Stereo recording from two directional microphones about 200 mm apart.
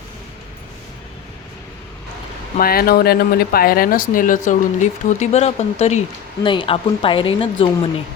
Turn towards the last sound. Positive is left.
turn(degrees=25)  # may be behind; listen again after turning